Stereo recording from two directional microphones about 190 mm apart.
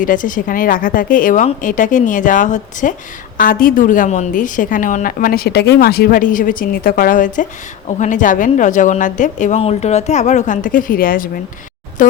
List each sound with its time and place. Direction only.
0.0 s a woman's voice: 45° left (ahead or behind)